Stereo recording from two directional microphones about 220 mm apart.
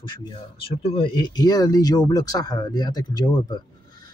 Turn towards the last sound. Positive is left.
turn(degrees=20)  # may be behind; listen again after turning